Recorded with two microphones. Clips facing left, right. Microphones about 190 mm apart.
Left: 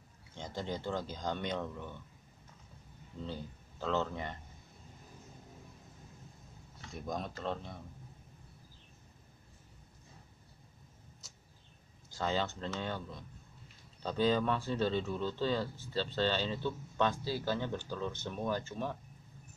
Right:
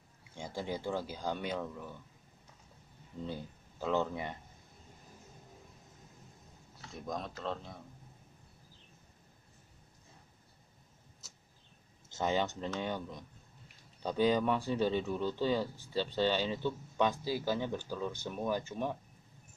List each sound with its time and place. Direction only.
0.3 s speech: 10° right (ahead or behind)
3.1 s speech: 15° right (ahead or behind)
7.1 s speech: centre (ahead or behind)
11.2 s tick-tock: centre (ahead or behind)
12.1 s speech: 20° right (ahead or behind)